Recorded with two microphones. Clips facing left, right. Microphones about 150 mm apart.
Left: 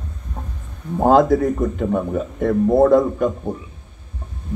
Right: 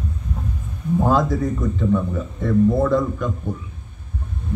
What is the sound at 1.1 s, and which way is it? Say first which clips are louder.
Speech: left 8 dB; 55° left (ahead or behind).